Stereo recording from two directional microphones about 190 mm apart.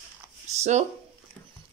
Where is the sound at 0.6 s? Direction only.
35° right (ahead or behind).